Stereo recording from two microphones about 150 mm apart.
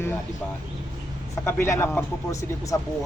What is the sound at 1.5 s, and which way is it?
Speech, 15° left (ahead or behind).